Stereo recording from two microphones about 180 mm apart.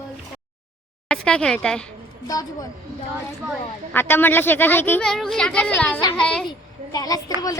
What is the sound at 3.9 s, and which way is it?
A child's voice, 10° left (ahead or behind).